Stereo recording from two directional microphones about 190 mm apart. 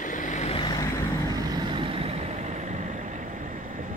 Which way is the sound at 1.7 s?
25° right (ahead or behind).